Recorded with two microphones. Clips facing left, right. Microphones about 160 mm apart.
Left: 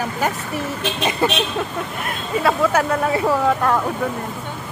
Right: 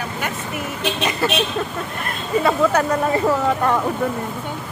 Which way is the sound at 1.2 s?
20° left (ahead or behind).